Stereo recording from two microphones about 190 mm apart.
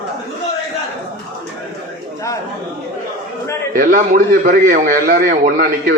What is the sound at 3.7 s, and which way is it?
A man's voice, 45° right (ahead or behind).